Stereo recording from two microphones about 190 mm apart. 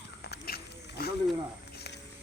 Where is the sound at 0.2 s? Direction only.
55° left (ahead or behind).